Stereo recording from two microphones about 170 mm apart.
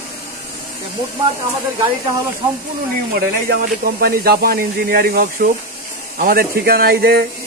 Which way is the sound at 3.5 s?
65° right (ahead or behind).